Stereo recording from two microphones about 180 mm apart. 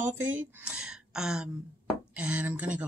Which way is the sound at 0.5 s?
5° right (ahead or behind).